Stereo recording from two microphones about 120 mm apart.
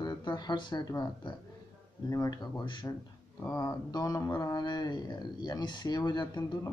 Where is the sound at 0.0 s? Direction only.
35° left (ahead or behind).